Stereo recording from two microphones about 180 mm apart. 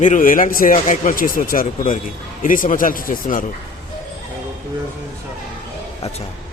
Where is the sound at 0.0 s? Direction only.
45° left (ahead or behind).